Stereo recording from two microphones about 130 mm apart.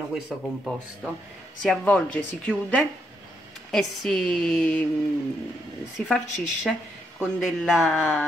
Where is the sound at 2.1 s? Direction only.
10° left (ahead or behind).